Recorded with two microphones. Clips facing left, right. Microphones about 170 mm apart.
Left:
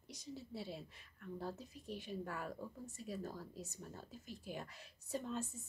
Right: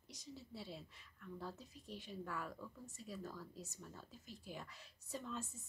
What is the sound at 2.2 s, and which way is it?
A woman's voice, 45° left (ahead or behind).